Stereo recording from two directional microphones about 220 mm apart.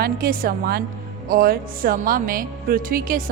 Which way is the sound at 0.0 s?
40° right (ahead or behind).